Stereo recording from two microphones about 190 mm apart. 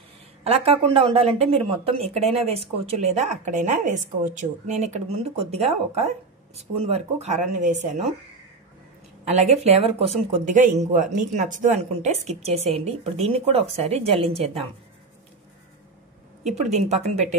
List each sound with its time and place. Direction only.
0.4 s speech: 30° right (ahead or behind)
9.2 s speech: 35° right (ahead or behind)
16.5 s speech: 35° right (ahead or behind)